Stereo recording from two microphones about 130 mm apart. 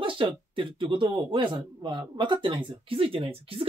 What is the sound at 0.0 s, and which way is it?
Speech, 40° right (ahead or behind).